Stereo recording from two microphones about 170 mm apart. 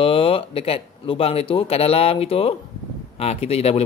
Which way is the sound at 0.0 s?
30° left (ahead or behind).